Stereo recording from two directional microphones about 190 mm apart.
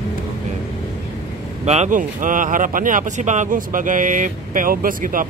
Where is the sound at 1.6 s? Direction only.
40° right (ahead or behind).